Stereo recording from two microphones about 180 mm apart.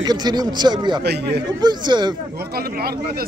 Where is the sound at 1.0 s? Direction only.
65° right (ahead or behind).